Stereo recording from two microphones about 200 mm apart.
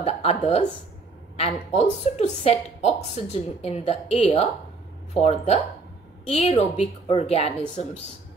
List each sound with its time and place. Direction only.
0.0 s speech: 30° left (ahead or behind)